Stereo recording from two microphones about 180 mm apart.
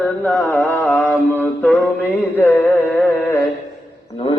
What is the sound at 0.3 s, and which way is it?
Mantra, 5° left (ahead or behind).